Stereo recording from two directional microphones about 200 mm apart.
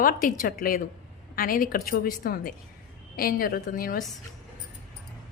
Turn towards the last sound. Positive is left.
turn(degrees=45)  # may be behind; listen again after turning